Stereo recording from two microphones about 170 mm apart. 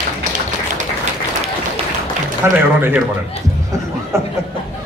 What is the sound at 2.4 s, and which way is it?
Speech, 15° right (ahead or behind).